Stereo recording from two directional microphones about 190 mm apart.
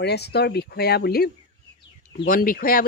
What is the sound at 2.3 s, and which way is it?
Speech, 50° left (ahead or behind).